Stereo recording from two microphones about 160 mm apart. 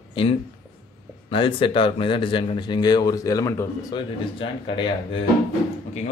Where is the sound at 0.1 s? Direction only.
35° left (ahead or behind).